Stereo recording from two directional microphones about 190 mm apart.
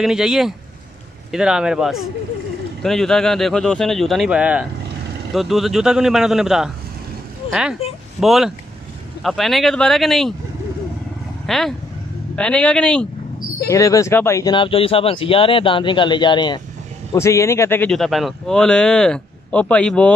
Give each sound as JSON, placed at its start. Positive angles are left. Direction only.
{"t": 0.0, "sound": "a man's voice", "side_deg": -5}
{"t": 7.4, "sound": "a sound", "side_deg": 30}
{"t": 8.2, "sound": "a man's voice", "side_deg": 0}
{"t": 11.4, "sound": "a man's voice", "side_deg": 0}
{"t": 13.7, "sound": "a man's voice", "side_deg": 15}